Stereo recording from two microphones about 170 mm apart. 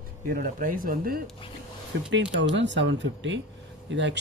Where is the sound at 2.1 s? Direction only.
90° right.